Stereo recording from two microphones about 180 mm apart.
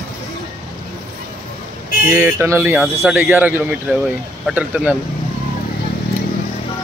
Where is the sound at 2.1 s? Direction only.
15° right (ahead or behind).